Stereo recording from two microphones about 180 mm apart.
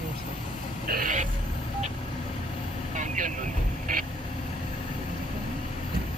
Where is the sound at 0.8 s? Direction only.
50° right (ahead or behind).